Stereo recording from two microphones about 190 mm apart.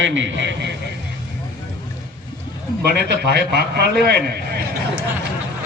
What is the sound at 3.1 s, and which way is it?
A man's voice, 60° right (ahead or behind).